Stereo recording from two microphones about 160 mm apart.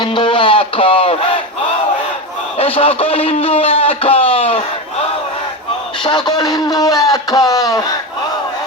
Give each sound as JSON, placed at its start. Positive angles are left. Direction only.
{"t": 0.0, "sound": "speech", "side_deg": 30}
{"t": 2.6, "sound": "a man's voice", "side_deg": 35}
{"t": 6.0, "sound": "speech", "side_deg": 25}